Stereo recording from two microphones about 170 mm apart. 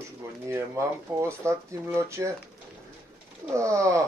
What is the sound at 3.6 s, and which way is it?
Speech, 20° right (ahead or behind).